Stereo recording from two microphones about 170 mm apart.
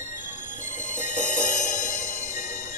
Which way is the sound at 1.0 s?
45° left (ahead or behind).